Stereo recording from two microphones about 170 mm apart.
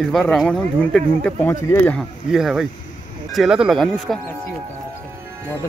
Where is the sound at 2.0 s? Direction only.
5° right (ahead or behind).